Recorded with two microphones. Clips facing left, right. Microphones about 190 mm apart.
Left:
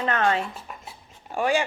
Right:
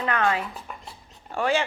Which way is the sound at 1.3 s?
15° left (ahead or behind).